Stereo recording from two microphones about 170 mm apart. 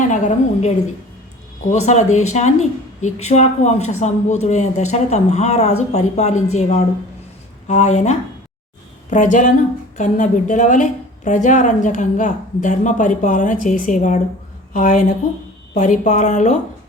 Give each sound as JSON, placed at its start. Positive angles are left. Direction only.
{"t": 0.0, "sound": "a woman's voice", "side_deg": 45}